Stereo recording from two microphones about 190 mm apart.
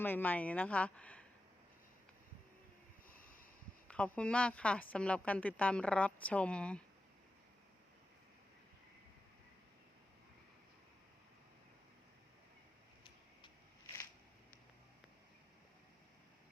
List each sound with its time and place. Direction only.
0.0 s speech: 10° left (ahead or behind)
3.1 s a sound: 50° left (ahead or behind)
3.8 s a woman's voice: 5° left (ahead or behind)